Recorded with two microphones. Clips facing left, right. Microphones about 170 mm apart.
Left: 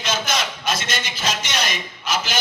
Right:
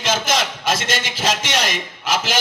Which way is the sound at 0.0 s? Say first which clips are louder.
Right 4 dB; 90° right.